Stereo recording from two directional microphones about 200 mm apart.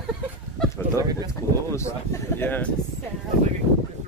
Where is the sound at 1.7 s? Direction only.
10° left (ahead or behind).